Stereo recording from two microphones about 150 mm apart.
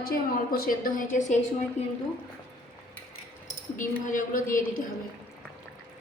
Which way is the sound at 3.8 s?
60° left (ahead or behind).